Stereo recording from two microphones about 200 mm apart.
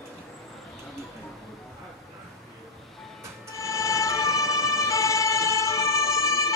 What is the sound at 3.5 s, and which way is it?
Emergency vehicle, 15° left (ahead or behind).